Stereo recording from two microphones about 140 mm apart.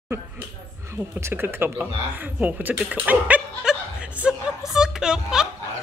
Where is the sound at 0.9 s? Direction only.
15° right (ahead or behind).